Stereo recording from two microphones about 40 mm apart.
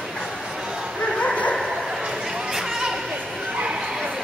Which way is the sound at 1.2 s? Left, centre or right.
Left.